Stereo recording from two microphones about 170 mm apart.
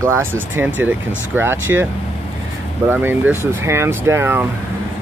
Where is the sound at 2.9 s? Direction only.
10° right (ahead or behind).